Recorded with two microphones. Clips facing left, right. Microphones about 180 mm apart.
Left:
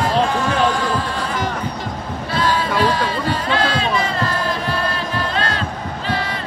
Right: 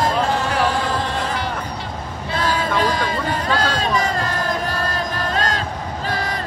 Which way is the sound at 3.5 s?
40° right (ahead or behind).